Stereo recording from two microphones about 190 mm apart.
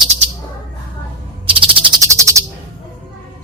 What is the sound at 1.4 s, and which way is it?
Bird, 30° right (ahead or behind).